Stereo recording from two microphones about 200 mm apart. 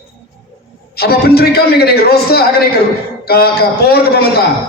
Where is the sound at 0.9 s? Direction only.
50° left (ahead or behind).